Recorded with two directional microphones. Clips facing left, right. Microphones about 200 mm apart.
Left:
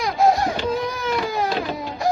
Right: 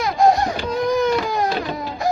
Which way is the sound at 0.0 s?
Centre (ahead or behind).